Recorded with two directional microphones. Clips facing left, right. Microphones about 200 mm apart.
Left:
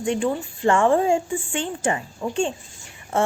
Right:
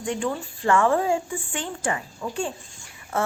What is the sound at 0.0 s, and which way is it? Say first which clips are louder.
A woman's voice: left 4 dB; 20° left (ahead or behind).